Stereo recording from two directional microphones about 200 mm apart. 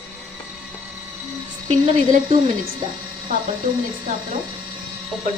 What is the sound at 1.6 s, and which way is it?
Speech, 30° right (ahead or behind).